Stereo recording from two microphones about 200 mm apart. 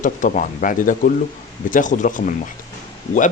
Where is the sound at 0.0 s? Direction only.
40° left (ahead or behind).